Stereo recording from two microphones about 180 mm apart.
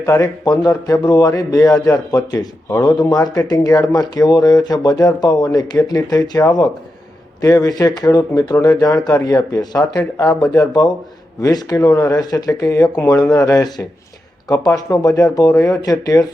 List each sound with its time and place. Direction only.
0.0 s a man's voice: 20° left (ahead or behind)